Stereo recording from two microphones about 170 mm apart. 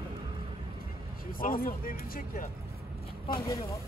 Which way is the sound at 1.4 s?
55° left (ahead or behind).